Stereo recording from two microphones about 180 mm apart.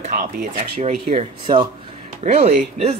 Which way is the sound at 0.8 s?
35° right (ahead or behind).